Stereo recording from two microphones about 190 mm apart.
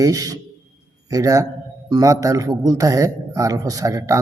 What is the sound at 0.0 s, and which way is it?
A man's voice, 20° right (ahead or behind).